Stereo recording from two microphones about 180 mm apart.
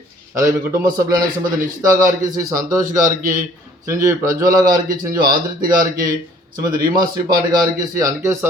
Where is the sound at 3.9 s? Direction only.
15° right (ahead or behind).